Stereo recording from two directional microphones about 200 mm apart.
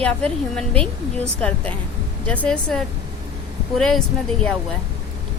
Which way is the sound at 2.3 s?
5° left (ahead or behind).